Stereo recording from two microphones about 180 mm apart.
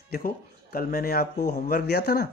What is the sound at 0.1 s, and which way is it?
Speech, 50° left (ahead or behind).